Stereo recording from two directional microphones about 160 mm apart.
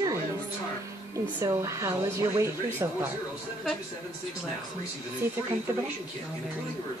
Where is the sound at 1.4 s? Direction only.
20° right (ahead or behind).